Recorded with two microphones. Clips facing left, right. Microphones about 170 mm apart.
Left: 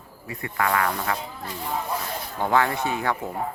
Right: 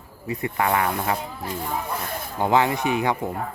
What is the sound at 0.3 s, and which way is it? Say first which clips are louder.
Speech: right 3 dB; 20° right (ahead or behind).